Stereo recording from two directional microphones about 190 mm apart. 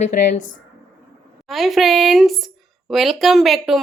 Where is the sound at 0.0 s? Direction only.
40° left (ahead or behind).